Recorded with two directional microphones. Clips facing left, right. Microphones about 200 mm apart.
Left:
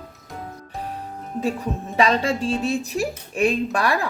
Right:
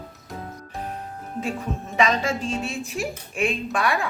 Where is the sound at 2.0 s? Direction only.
30° left (ahead or behind).